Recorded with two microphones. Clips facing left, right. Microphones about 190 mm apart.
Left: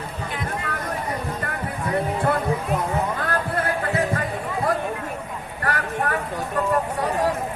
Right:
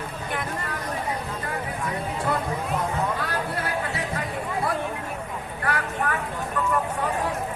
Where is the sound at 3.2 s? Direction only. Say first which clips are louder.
Left 4 dB; 50° left (ahead or behind).